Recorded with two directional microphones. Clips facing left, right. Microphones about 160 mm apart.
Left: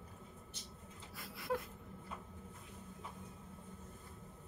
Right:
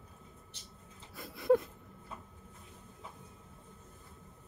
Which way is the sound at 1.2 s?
25° right (ahead or behind).